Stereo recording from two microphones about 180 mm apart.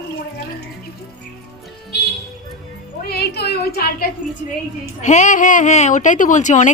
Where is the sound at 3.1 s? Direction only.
60° left (ahead or behind).